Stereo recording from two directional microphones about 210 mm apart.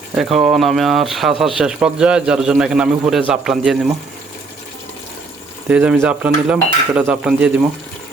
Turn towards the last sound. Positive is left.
turn(degrees=-5)  # may be behind; listen again after turning